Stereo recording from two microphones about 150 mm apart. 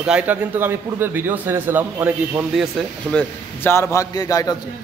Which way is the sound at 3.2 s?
15° left (ahead or behind).